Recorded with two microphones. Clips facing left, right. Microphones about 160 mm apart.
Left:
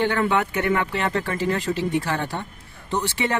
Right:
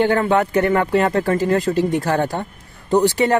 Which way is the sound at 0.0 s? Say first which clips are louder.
Right 5 dB; 40° right (ahead or behind).